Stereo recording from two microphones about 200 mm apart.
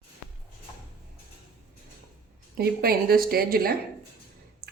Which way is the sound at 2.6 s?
50° right (ahead or behind).